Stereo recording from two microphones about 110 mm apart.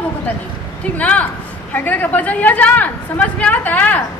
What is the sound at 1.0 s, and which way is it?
A woman's voice, 10° left (ahead or behind).